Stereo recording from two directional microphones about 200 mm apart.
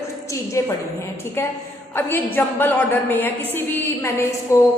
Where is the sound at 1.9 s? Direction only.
10° left (ahead or behind).